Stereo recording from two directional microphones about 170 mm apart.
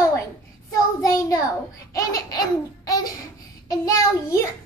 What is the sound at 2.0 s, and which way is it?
A child's voice, 20° left (ahead or behind).